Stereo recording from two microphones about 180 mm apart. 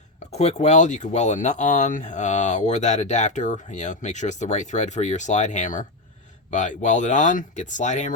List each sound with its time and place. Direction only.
0.3 s speech: 35° left (ahead or behind)